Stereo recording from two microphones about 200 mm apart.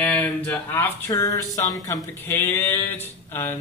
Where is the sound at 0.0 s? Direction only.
5° left (ahead or behind).